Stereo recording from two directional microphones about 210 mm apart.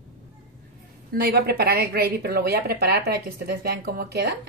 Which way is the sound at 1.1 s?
50° right (ahead or behind).